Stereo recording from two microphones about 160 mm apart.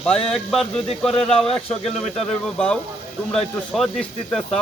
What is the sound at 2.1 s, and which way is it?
Speech, 5° left (ahead or behind).